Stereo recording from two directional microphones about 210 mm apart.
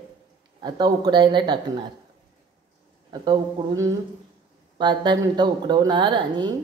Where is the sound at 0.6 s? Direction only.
20° right (ahead or behind).